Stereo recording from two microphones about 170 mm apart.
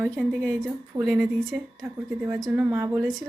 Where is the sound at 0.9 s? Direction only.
20° right (ahead or behind).